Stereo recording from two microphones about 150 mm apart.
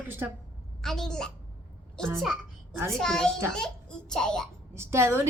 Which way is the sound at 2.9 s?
5° left (ahead or behind).